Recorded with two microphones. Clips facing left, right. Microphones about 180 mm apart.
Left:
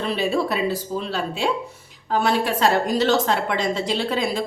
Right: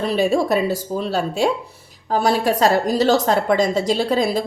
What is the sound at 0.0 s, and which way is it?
A woman's voice, 40° right (ahead or behind).